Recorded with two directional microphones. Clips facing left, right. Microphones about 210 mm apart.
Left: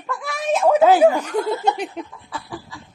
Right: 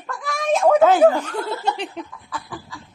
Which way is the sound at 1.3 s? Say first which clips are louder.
Left 4 dB; 20° left (ahead or behind).